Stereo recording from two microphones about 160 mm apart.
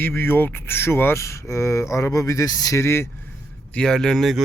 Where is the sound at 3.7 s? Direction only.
5° left (ahead or behind).